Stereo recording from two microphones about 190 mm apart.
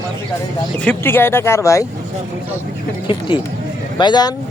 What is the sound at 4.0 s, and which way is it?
Speech, 25° left (ahead or behind).